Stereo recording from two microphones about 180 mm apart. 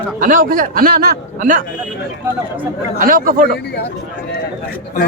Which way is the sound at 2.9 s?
50° right (ahead or behind).